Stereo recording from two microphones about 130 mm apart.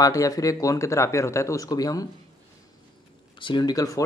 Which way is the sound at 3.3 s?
40° left (ahead or behind).